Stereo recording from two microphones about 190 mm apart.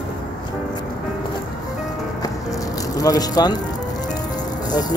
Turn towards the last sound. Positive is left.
turn(degrees=20)  # may be behind; listen again after turning